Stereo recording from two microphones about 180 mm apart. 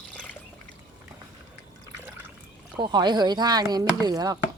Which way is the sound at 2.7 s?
25° right (ahead or behind).